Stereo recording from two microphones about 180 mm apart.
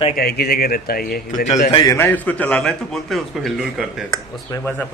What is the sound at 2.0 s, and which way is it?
A man's voice, 10° left (ahead or behind).